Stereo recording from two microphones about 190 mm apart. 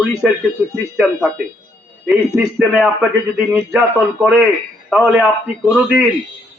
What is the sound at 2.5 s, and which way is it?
A man's voice, 5° right (ahead or behind).